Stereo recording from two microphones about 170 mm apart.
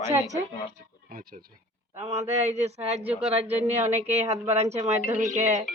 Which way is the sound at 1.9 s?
40° right (ahead or behind).